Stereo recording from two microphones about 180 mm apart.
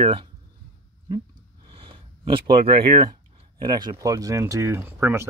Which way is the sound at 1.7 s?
30° right (ahead or behind).